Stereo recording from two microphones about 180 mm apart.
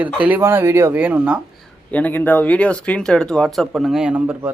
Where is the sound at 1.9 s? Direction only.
10° left (ahead or behind).